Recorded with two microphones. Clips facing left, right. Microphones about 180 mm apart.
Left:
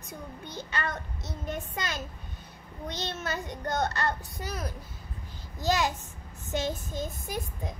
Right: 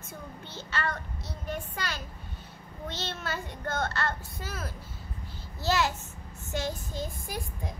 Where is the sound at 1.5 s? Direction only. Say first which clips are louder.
Left 1 dB; 20° left (ahead or behind).